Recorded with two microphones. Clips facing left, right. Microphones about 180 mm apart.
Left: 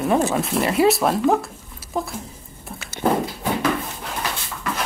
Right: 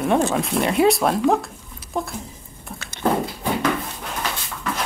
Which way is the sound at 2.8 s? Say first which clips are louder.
Left 1 dB; 10° left (ahead or behind).